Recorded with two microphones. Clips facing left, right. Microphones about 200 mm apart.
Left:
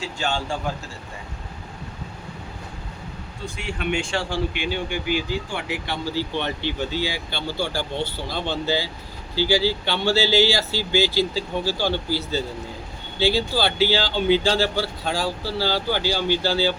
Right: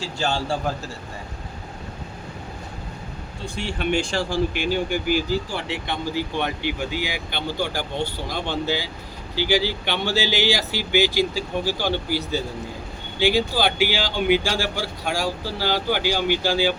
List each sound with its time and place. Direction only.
0.0 s speech: 35° right (ahead or behind)
3.4 s speech: 30° right (ahead or behind)
5.5 s speech: 25° right (ahead or behind)